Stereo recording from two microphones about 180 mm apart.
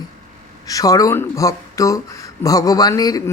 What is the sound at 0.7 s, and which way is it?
Speech, 20° left (ahead or behind).